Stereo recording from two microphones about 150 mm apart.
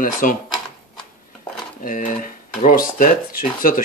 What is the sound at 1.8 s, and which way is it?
Speech, 65° left (ahead or behind).